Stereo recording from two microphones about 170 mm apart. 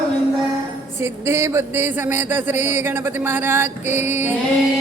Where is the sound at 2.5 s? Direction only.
45° left (ahead or behind).